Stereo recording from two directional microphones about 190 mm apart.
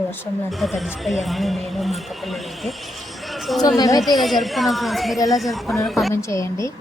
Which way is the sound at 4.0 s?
Centre (ahead or behind).